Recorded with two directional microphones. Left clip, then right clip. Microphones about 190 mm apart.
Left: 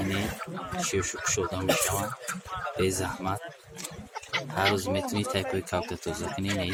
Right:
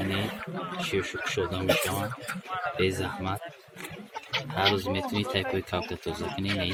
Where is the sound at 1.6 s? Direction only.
45° left (ahead or behind).